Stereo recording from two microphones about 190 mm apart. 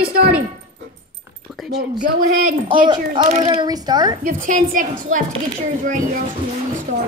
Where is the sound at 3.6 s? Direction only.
20° right (ahead or behind).